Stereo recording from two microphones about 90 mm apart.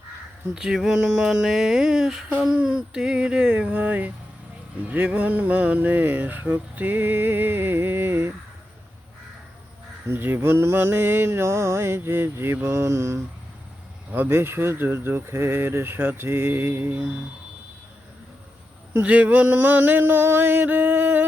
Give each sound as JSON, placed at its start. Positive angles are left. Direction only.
{"t": 0.5, "sound": "a sound", "side_deg": -5}
{"t": 4.8, "sound": "speech", "side_deg": -15}
{"t": 10.1, "sound": "speech", "side_deg": -25}
{"t": 18.9, "sound": "speech", "side_deg": -15}